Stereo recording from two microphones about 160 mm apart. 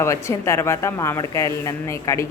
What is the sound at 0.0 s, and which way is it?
Speech, 20° left (ahead or behind).